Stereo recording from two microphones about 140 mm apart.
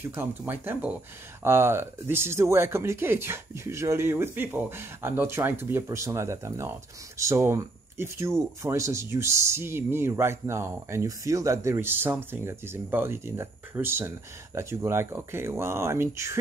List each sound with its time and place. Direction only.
0.0 s speech: 15° right (ahead or behind)